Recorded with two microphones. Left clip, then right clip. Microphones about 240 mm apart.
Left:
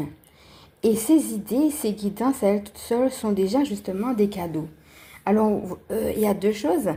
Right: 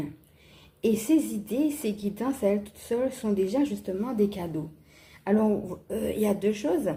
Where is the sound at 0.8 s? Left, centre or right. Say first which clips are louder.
Left 5 dB; left.